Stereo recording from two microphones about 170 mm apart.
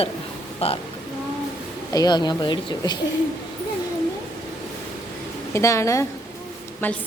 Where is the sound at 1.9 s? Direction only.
25° left (ahead or behind).